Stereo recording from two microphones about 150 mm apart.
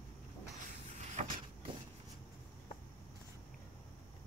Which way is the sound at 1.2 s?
50° right (ahead or behind).